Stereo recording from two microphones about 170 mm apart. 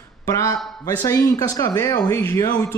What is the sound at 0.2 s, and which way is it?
A man's voice, 20° left (ahead or behind).